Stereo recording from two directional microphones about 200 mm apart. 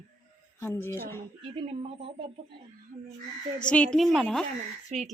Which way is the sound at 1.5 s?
30° right (ahead or behind).